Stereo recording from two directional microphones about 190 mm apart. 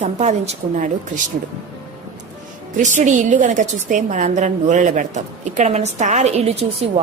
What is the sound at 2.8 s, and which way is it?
A woman's voice, 40° right (ahead or behind).